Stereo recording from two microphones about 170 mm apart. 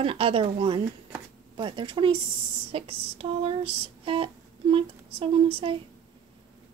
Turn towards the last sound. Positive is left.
turn(degrees=-35)  # may be behind; listen again after turning